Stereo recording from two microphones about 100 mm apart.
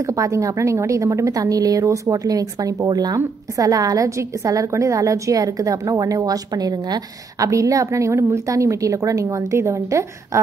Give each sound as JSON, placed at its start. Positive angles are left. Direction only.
{"t": 0.0, "sound": "a woman's voice", "side_deg": -35}